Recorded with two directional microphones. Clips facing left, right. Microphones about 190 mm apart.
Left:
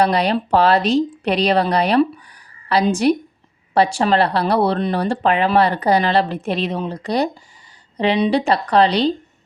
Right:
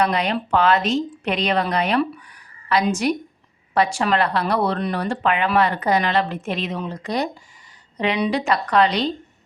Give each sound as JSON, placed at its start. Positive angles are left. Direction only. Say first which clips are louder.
{"t": 0.0, "sound": "speech", "louder": "left 4 dB", "side_deg": 35}